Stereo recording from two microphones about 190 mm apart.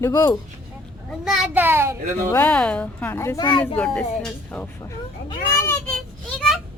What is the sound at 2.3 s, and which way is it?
A woman's voice, 10° left (ahead or behind).